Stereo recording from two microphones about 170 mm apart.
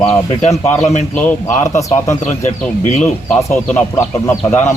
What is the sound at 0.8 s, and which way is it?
Speech, 40° left (ahead or behind).